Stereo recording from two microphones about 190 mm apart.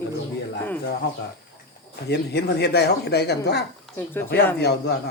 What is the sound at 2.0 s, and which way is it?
Speech, 60° left (ahead or behind).